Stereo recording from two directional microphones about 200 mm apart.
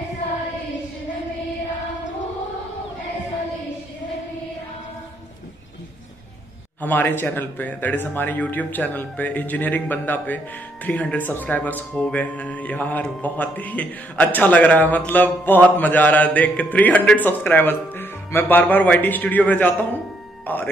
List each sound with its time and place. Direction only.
6.8 s speech: 10° left (ahead or behind)